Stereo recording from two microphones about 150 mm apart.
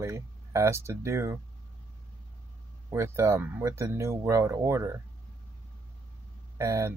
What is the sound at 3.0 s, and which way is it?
Speech, 20° right (ahead or behind).